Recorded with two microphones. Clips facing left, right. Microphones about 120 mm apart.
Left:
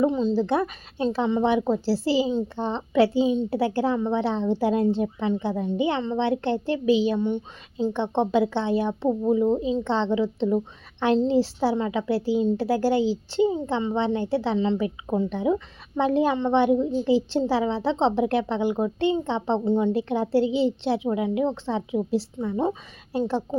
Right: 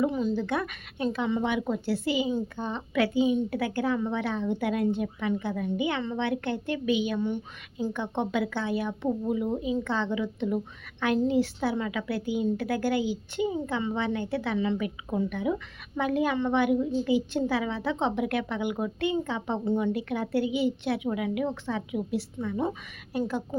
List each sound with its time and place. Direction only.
0.0 s a woman's voice: 25° left (ahead or behind)